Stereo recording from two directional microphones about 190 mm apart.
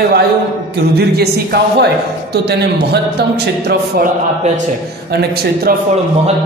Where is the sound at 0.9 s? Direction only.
55° right (ahead or behind).